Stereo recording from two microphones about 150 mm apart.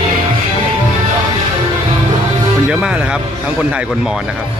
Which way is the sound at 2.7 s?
5° right (ahead or behind).